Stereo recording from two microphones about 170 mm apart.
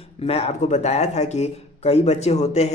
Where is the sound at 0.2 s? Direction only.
35° left (ahead or behind).